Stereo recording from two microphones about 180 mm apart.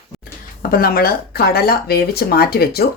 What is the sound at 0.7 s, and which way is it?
Speech, 55° left (ahead or behind).